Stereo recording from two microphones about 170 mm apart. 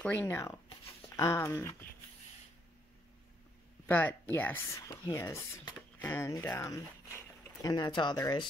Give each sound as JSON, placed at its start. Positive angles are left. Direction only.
{"t": 0.0, "sound": "speech", "side_deg": 10}
{"t": 3.8, "sound": "speech", "side_deg": 10}